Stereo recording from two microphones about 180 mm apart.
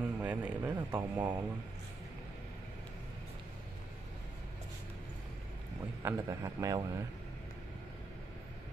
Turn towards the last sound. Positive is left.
turn(degrees=-20)  # may be behind; listen again after turning